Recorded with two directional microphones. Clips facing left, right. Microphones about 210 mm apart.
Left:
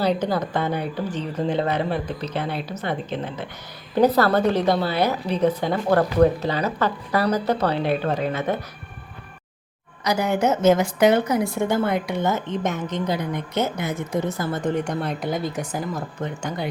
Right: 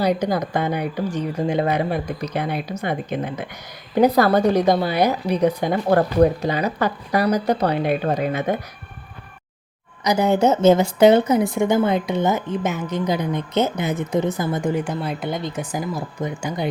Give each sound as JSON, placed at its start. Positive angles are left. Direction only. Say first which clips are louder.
{"t": 0.0, "sound": "speech", "louder": "right 2 dB", "side_deg": -15}
{"t": 10.0, "sound": "a woman's voice", "louder": "right 4 dB", "side_deg": -20}
{"t": 12.5, "sound": "speech", "louder": "right 2 dB", "side_deg": -10}
{"t": 13.1, "sound": "speech", "louder": "right 4 dB", "side_deg": -20}
{"t": 15.7, "sound": "speech", "louder": "right 2 dB", "side_deg": -10}